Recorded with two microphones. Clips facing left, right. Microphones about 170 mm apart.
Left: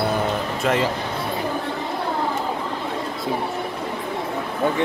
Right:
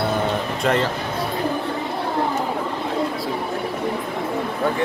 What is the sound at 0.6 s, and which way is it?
Speech, 5° left (ahead or behind).